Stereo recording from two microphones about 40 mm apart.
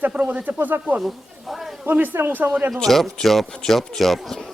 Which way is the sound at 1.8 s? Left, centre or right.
Right.